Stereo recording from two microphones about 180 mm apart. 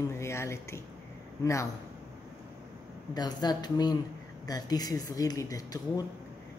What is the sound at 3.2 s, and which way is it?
Speech, 25° left (ahead or behind).